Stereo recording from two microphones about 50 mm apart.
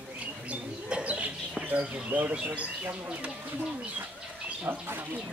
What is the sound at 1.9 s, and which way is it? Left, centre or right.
Speech, right.